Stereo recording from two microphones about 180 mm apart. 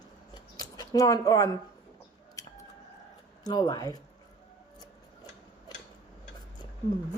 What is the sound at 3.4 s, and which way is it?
Speech, 20° left (ahead or behind).